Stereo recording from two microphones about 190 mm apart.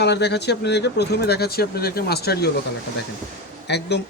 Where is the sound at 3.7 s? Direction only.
60° left (ahead or behind).